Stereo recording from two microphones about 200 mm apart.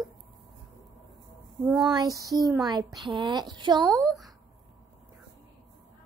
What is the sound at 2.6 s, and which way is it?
A woman's voice, 20° right (ahead or behind).